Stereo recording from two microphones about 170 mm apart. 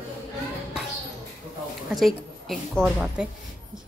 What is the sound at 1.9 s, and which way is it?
A woman's voice, centre (ahead or behind).